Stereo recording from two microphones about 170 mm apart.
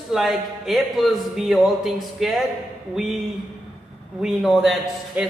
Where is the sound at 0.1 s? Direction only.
Centre (ahead or behind).